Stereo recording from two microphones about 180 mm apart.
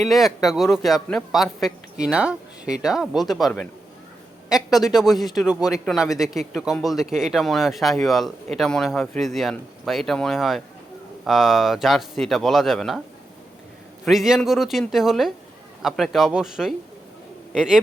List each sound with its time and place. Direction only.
0.0 s speech: centre (ahead or behind)
14.0 s a man's voice: centre (ahead or behind)